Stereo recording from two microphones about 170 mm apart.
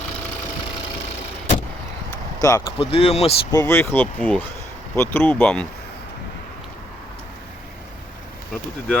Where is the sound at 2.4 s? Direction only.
20° left (ahead or behind).